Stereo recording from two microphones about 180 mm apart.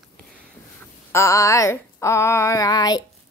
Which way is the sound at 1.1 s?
15° left (ahead or behind).